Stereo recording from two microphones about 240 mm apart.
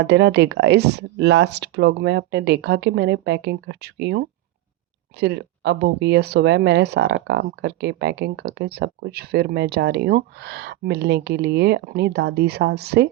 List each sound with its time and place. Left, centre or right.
0.0 s speech: right